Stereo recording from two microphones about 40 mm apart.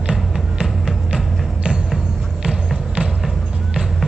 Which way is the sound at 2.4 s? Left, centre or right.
Right.